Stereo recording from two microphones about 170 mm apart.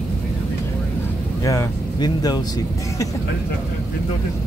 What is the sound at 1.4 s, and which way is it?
Vehicle, 20° left (ahead or behind).